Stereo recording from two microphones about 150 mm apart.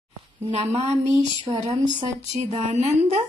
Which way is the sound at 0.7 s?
45° right (ahead or behind).